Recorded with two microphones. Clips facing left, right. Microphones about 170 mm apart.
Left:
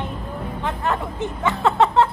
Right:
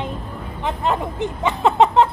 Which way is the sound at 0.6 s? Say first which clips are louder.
Right 3 dB; 20° right (ahead or behind).